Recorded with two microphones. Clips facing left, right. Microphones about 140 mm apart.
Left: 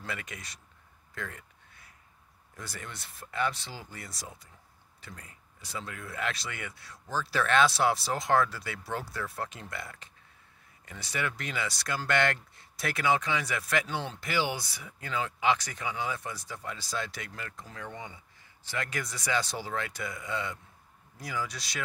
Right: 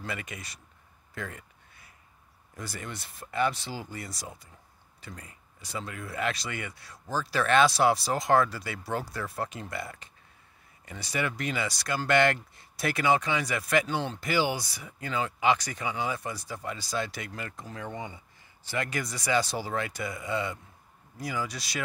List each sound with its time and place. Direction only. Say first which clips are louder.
0.0 s speech: right 2 dB; 5° right (ahead or behind)
1.1 s a sound: right 2 dB; 5° right (ahead or behind)
2.6 s speech: right 4 dB; centre (ahead or behind)
18.7 s speech: right 3 dB; 5° right (ahead or behind)